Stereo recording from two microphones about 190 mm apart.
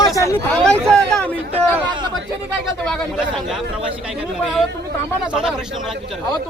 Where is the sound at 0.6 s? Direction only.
5° left (ahead or behind).